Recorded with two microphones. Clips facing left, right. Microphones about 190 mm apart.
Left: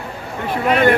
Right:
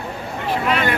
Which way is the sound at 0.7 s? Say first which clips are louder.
Left 8 dB; 50° left (ahead or behind).